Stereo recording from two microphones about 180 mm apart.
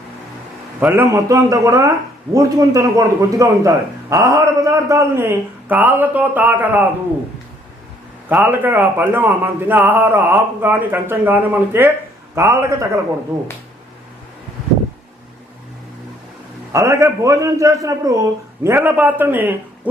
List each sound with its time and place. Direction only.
0.8 s a man's voice: 10° right (ahead or behind)
8.3 s speech: 10° right (ahead or behind)
16.7 s a man's voice: 15° right (ahead or behind)